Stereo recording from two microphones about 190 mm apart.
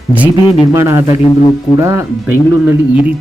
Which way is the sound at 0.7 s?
15° right (ahead or behind).